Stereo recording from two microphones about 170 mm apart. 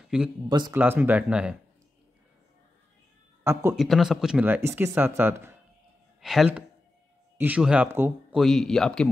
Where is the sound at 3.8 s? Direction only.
Centre (ahead or behind).